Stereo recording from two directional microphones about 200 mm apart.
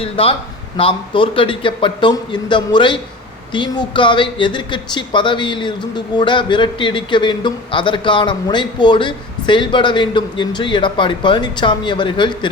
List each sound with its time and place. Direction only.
0.0 s speech: 30° left (ahead or behind)